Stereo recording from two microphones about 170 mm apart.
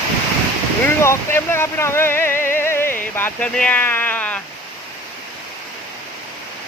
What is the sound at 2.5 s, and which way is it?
Music, 15° left (ahead or behind).